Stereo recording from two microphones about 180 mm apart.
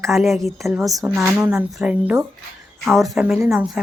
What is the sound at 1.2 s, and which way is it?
Speech, 5° right (ahead or behind).